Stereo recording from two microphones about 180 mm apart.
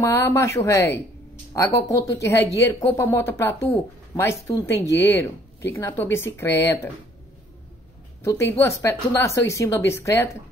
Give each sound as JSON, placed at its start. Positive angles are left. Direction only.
{"t": 0.0, "sound": "speech", "side_deg": 15}
{"t": 8.2, "sound": "speech", "side_deg": 15}